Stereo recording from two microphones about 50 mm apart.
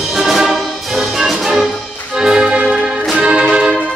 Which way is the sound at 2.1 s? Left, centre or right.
Centre.